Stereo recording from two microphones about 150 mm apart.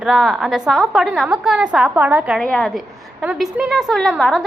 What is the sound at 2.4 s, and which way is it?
Speech, 5° left (ahead or behind).